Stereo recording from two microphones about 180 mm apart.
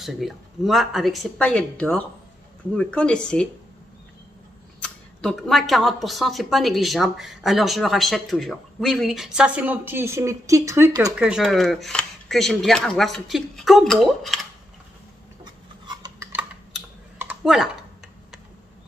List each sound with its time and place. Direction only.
0.0 s speech: centre (ahead or behind)
4.8 s speech: centre (ahead or behind); by 11.1 s 20° right (ahead or behind)
11.1 s speech: 5° right (ahead or behind)
15.4 s a sound: 25° right (ahead or behind)
16.3 s typing: 10° right (ahead or behind)